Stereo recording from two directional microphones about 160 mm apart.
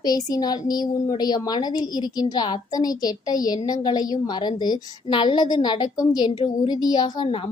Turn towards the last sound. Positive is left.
turn(degrees=30)  # may be behind; listen again after turning